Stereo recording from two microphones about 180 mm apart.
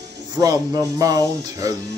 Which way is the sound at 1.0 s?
20° right (ahead or behind).